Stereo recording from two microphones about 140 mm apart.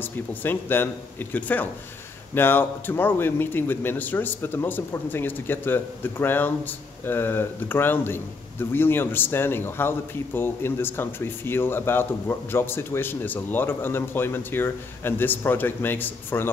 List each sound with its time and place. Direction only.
0.0 s a man's voice: 15° left (ahead or behind)